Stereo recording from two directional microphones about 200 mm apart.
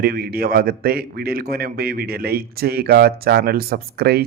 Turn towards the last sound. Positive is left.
turn(degrees=-50)  # may be behind; listen again after turning